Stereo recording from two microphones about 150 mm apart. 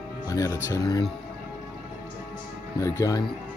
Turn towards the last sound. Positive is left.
turn(degrees=25)  # may be behind; listen again after turning